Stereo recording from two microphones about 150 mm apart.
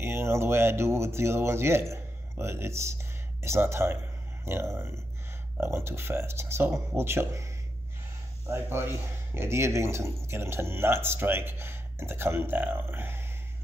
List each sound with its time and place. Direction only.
0.0 s speech: 15° right (ahead or behind)